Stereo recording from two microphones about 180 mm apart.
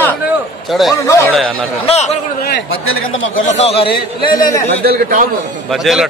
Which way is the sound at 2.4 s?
65° left (ahead or behind).